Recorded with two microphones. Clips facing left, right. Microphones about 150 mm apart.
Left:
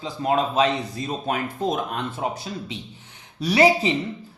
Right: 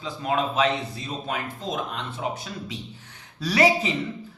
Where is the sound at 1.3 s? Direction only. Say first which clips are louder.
Left 6 dB; 50° left (ahead or behind).